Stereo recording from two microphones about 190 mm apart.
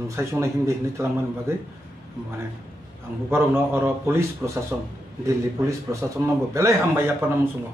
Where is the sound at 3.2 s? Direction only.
15° right (ahead or behind).